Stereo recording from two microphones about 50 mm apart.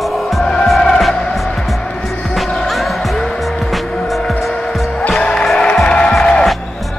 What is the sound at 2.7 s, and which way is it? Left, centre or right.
Music, centre.